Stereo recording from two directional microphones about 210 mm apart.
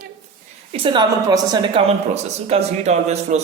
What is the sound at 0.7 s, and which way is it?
A man's voice, 25° right (ahead or behind).